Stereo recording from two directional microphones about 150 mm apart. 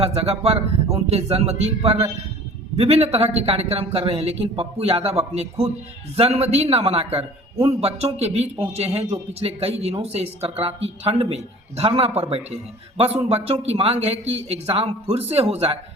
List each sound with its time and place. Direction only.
0.0 s speech: 45° right (ahead or behind)